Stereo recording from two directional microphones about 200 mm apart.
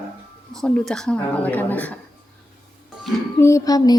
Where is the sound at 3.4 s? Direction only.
15° left (ahead or behind).